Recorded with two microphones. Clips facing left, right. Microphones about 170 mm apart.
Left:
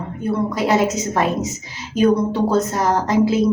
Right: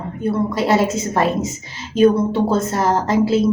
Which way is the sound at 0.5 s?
Centre (ahead or behind).